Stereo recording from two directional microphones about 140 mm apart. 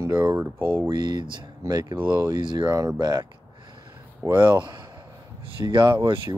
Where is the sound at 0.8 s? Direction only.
30° right (ahead or behind).